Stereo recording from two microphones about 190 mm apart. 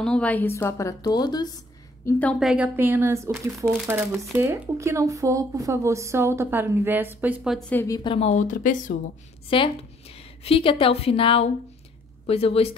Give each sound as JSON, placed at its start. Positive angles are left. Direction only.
{"t": 0.0, "sound": "a woman's voice", "side_deg": 5}
{"t": 2.0, "sound": "speech", "side_deg": 10}
{"t": 7.7, "sound": "a woman's voice", "side_deg": 15}
{"t": 9.5, "sound": "a woman's voice", "side_deg": 30}